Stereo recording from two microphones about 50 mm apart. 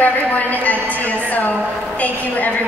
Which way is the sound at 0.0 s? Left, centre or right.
Left.